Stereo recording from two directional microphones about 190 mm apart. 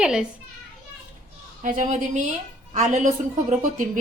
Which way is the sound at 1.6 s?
40° right (ahead or behind).